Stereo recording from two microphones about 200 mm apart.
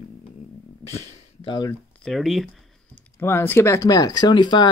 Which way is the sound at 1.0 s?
30° left (ahead or behind).